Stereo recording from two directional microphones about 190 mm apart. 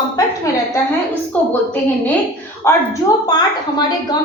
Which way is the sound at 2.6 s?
20° left (ahead or behind).